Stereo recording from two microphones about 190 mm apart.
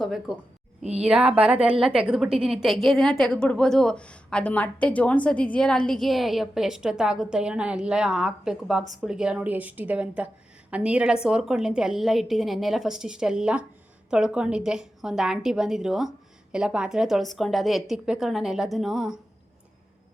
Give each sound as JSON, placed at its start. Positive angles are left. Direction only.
{"t": 0.0, "sound": "a woman's voice", "side_deg": 0}
{"t": 0.8, "sound": "speech", "side_deg": -35}
{"t": 1.0, "sound": "a woman's voice", "side_deg": -5}